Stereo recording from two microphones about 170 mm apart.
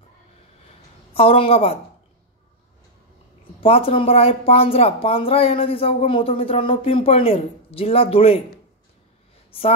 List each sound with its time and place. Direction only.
1.1 s speech: 35° left (ahead or behind)
3.6 s speech: 35° left (ahead or behind)